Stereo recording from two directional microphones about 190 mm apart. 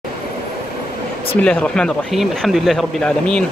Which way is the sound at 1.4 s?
5° left (ahead or behind).